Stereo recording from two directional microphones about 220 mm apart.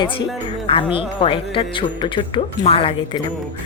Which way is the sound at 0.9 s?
25° left (ahead or behind).